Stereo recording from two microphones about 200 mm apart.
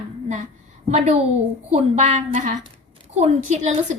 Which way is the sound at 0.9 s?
35° right (ahead or behind).